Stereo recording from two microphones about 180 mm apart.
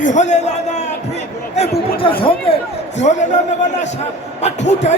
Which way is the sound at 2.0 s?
30° left (ahead or behind).